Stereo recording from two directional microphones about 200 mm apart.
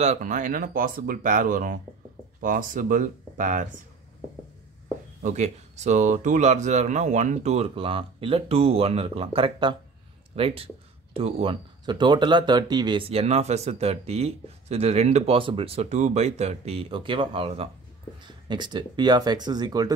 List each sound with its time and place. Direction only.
0.0 s speech: 40° right (ahead or behind)
5.2 s speech: 35° right (ahead or behind); by 19.9 s 20° right (ahead or behind)